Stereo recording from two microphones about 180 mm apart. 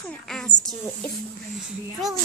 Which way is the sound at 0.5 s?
25° left (ahead or behind).